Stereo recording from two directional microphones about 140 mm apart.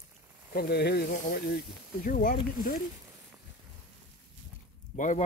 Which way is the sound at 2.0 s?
75° left (ahead or behind).